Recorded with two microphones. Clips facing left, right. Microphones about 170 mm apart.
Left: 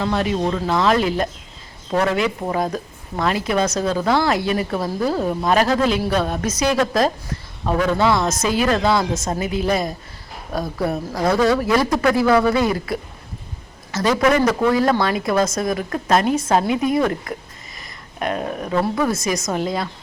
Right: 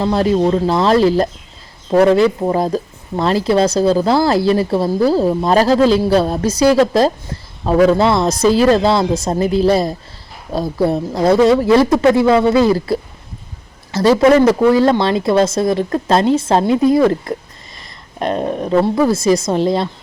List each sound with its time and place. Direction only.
0.0 s speech: 35° right (ahead or behind)